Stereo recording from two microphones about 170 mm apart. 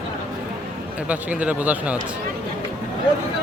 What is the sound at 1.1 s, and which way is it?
Speech, 10° right (ahead or behind).